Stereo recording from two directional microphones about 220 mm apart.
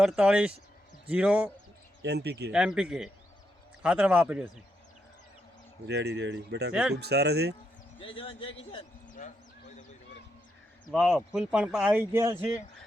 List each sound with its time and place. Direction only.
0.0 s speech: 5° right (ahead or behind)
2.0 s speech: 50° right (ahead or behind)
2.5 s speech: 5° right (ahead or behind)
5.9 s speech: 50° right (ahead or behind)
7.9 s speech: 25° left (ahead or behind)
10.9 s speech: 5° right (ahead or behind)